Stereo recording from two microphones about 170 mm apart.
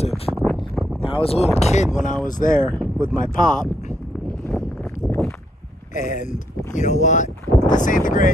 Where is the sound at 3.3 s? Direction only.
50° left (ahead or behind).